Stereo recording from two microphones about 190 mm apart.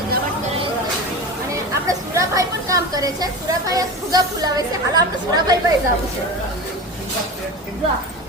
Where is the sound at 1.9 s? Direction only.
15° right (ahead or behind).